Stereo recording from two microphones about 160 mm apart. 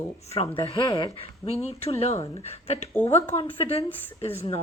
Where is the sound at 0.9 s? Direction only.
20° left (ahead or behind).